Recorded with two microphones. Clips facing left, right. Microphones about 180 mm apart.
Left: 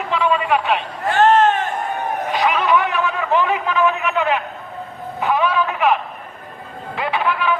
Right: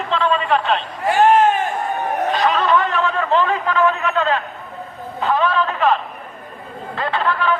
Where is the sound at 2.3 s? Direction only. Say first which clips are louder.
Left 1 dB; 15° left (ahead or behind).